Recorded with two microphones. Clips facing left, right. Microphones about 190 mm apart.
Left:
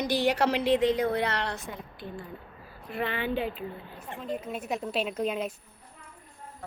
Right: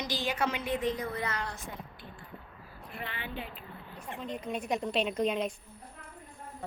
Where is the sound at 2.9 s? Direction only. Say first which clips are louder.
Left 11 dB; 90° left.